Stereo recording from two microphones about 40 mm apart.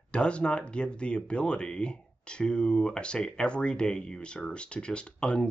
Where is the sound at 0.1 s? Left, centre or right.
Left.